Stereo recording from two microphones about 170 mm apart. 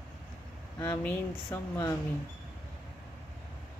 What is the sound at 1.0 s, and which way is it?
Speech, 15° left (ahead or behind).